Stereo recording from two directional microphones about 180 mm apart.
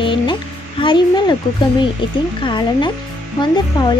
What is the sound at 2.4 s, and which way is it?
Speech, 25° left (ahead or behind).